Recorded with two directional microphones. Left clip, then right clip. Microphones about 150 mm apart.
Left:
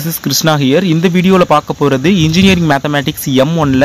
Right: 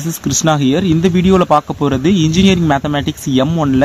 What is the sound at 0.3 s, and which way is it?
Speech, 15° left (ahead or behind).